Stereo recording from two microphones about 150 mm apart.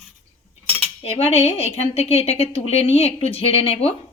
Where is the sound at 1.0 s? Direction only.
40° left (ahead or behind).